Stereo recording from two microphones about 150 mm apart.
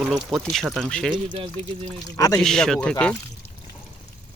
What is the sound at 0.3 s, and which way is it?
Speech, centre (ahead or behind).